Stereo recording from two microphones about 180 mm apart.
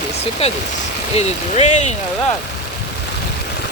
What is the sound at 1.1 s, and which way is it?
Speech, 40° left (ahead or behind).